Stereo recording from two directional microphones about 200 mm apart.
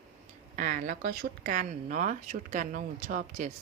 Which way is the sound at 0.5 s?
40° right (ahead or behind).